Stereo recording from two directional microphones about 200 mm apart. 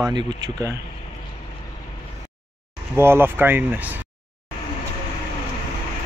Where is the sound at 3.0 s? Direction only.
10° right (ahead or behind).